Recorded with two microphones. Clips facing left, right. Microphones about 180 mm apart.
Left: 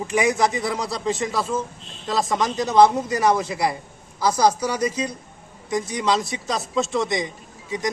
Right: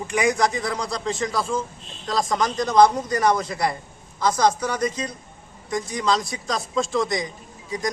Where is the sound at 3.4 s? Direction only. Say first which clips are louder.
Left 1 dB; 25° left (ahead or behind).